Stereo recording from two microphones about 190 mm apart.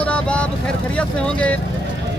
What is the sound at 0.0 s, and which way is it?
Vehicle, 5° left (ahead or behind).